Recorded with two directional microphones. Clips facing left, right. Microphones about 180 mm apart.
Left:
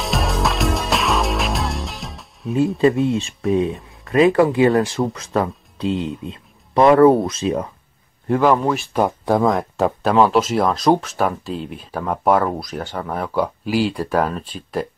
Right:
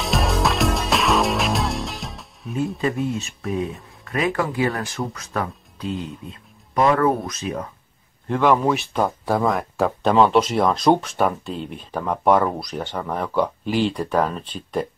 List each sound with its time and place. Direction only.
0.0 s music: centre (ahead or behind)
2.8 s speech: 25° left (ahead or behind)
8.3 s speech: 5° left (ahead or behind)
9.0 s speech: 15° left (ahead or behind)
9.8 s speech: 5° left (ahead or behind)